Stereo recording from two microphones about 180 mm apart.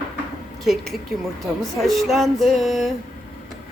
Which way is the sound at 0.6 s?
Centre (ahead or behind).